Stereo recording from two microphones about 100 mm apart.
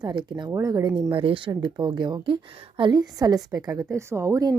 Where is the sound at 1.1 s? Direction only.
60° right (ahead or behind).